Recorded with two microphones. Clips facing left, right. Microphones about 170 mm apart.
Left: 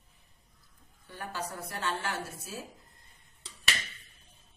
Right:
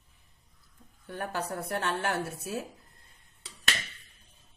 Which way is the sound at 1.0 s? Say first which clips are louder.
Right 5 dB; 60° right (ahead or behind).